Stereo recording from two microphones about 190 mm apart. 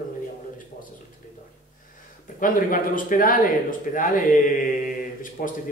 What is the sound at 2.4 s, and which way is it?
Speech, 45° left (ahead or behind).